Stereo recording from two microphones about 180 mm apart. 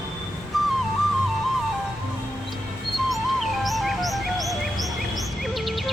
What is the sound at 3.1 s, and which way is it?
Music, centre (ahead or behind).